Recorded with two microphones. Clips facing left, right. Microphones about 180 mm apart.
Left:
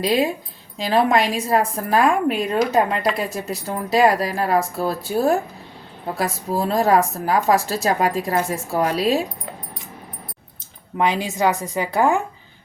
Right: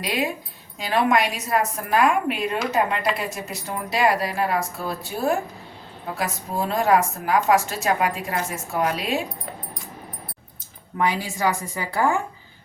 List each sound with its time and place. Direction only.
0.0 s a woman's voice: 30° left (ahead or behind)
10.9 s a woman's voice: 20° left (ahead or behind)